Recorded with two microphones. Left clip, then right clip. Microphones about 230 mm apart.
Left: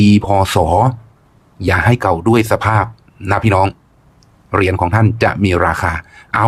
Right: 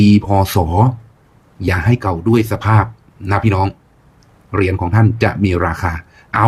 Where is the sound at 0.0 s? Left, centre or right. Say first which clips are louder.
Left 1 dB; centre.